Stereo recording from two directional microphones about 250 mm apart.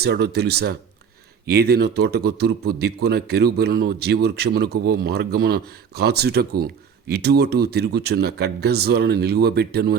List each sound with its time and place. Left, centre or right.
0.0 s a man's voice: right